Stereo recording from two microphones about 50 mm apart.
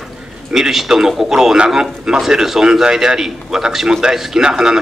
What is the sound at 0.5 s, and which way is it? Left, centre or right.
A man's voice, centre.